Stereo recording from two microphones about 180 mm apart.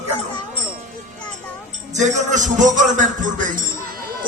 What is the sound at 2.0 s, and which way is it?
Music, 40° right (ahead or behind).